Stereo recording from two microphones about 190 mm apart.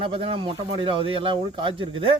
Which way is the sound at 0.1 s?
30° right (ahead or behind).